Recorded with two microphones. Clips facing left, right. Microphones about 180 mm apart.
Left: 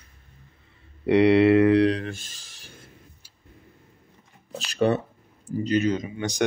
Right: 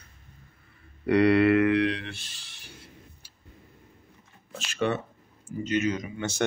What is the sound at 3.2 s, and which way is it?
Vehicle, 65° right (ahead or behind).